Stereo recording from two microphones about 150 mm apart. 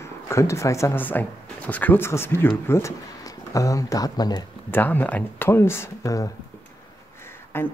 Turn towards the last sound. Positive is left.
turn(degrees=15)  # may be behind; listen again after turning